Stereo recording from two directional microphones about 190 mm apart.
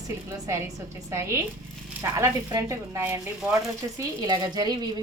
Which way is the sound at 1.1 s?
15° right (ahead or behind).